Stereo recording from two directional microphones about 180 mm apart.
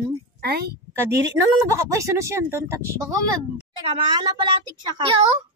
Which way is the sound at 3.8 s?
25° right (ahead or behind).